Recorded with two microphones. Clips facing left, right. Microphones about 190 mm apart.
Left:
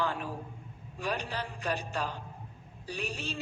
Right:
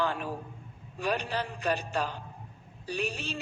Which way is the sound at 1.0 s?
65° right (ahead or behind).